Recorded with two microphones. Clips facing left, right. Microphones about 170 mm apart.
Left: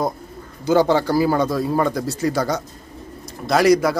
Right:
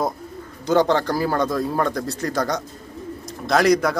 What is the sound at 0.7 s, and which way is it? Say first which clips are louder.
Speech: left 2 dB; 5° left (ahead or behind).